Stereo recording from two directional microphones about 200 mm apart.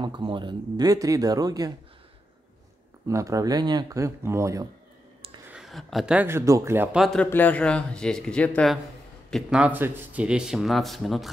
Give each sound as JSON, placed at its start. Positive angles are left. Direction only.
{"t": 0.0, "sound": "speech", "side_deg": -25}
{"t": 3.1, "sound": "speech", "side_deg": -15}
{"t": 5.5, "sound": "speech", "side_deg": 0}